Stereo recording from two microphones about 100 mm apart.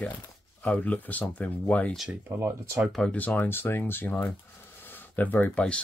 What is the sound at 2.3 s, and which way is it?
Speech, 30° right (ahead or behind).